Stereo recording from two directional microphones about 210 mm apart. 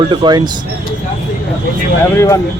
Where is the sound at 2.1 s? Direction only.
10° left (ahead or behind).